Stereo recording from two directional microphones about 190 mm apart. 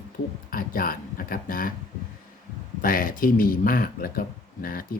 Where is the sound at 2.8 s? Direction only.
45° left (ahead or behind).